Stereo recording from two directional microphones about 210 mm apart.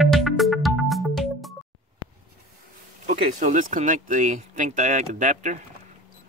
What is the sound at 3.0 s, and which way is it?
Speech, 35° right (ahead or behind).